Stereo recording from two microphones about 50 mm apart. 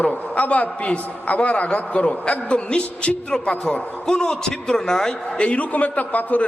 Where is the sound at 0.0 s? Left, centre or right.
Left.